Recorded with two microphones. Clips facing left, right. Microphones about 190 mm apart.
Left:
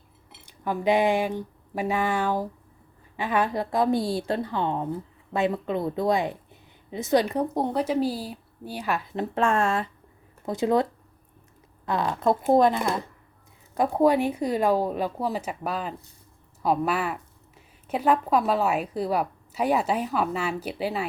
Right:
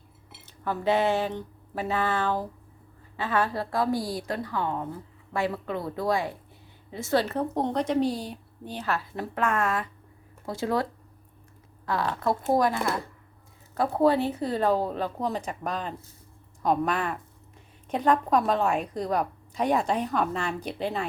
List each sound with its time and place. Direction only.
0.4 s speech: 15° left (ahead or behind)
11.9 s a woman's voice: 20° left (ahead or behind)